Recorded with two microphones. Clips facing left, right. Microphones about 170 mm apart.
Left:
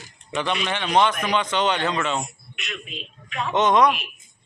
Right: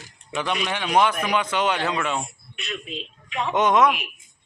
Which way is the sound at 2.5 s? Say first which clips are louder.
Right 4 dB; 30° right (ahead or behind).